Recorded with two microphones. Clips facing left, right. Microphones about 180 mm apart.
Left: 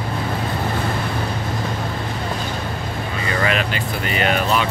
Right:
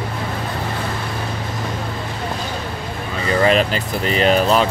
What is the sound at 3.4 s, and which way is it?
Speech, 35° right (ahead or behind).